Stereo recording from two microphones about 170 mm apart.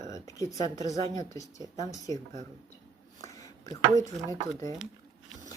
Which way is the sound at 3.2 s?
20° left (ahead or behind).